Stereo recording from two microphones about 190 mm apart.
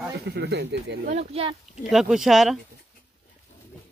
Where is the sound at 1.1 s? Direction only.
30° right (ahead or behind).